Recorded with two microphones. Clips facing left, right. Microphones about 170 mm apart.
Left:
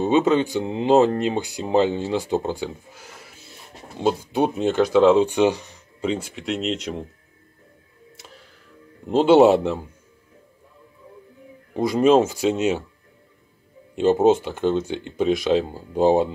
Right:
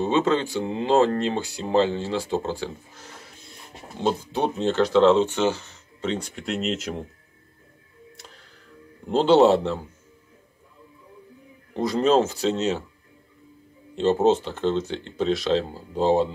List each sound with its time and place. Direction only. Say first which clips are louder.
0.0 s speech: left 3 dB; 15° left (ahead or behind); by 7.1 s centre (ahead or behind)
9.0 s speech: left 3 dB; 5° left (ahead or behind)
11.7 s speech: left 3 dB; 10° left (ahead or behind)
13.9 s speech: left 3 dB; 10° left (ahead or behind)